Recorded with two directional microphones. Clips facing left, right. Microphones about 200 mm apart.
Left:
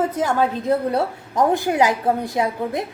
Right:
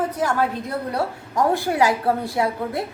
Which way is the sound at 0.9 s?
20° left (ahead or behind).